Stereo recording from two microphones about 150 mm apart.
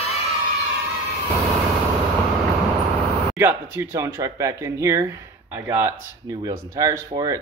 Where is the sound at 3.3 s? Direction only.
15° right (ahead or behind).